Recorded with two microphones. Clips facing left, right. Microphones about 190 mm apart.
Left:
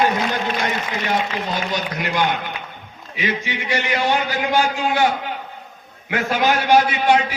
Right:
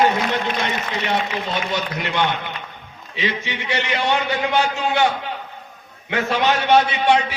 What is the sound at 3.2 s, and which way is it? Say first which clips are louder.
Speech: left 1 dB; 25° right (ahead or behind).